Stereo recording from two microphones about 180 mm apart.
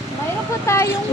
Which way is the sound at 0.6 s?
15° left (ahead or behind).